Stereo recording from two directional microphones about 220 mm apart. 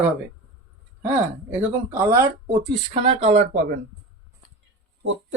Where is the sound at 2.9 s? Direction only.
30° right (ahead or behind).